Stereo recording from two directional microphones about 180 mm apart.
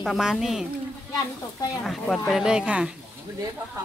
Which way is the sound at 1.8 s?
Centre (ahead or behind).